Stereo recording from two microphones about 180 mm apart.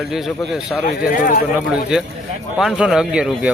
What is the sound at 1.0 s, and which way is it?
Speech, 55° left (ahead or behind).